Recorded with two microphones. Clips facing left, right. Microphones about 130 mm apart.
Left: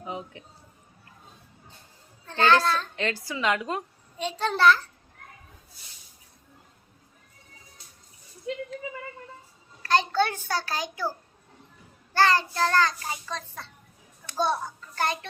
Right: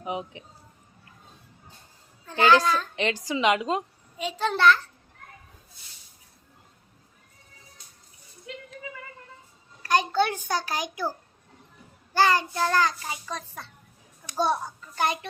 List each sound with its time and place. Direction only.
0.0 s a child's voice: 20° right (ahead or behind)
2.2 s a child's voice: 15° right (ahead or behind)
4.2 s a child's voice: centre (ahead or behind)
9.8 s a child's voice: 15° right (ahead or behind)
12.1 s a child's voice: 15° right (ahead or behind)